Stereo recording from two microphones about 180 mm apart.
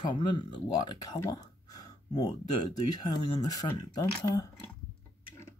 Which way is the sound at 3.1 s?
20° left (ahead or behind).